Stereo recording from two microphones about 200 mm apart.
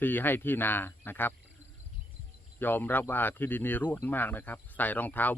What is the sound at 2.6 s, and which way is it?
Speech, 10° left (ahead or behind).